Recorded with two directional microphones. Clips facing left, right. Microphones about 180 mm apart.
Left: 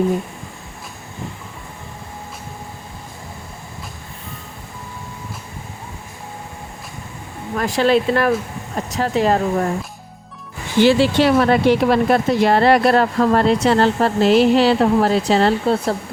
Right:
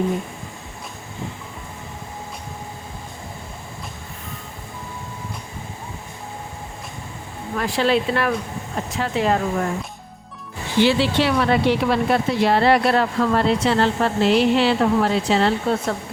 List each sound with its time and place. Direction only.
7.6 s speech: 45° left (ahead or behind)
10.8 s speech: 45° left (ahead or behind)